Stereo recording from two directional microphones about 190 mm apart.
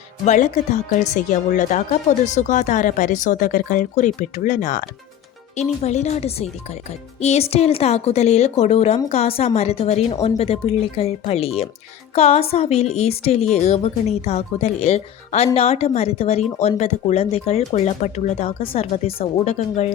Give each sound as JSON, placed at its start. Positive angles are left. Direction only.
{"t": 0.3, "sound": "speech", "side_deg": 40}